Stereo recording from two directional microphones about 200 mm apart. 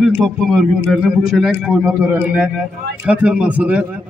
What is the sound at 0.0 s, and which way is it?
A man's voice, centre (ahead or behind).